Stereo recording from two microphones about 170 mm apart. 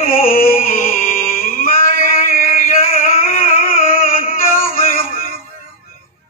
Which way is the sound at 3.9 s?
55° left (ahead or behind).